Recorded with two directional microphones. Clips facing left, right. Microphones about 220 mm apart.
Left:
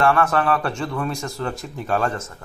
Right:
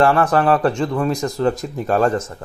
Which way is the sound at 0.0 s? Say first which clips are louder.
Right 4 dB; 30° right (ahead or behind).